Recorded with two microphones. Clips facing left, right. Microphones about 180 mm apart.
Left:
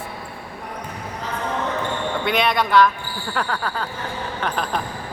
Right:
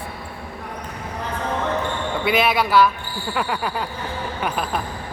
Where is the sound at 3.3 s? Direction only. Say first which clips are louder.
Right 1 dB; 10° right (ahead or behind).